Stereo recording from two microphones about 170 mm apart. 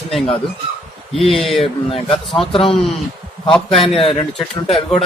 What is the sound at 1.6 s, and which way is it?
A man's voice, 35° left (ahead or behind).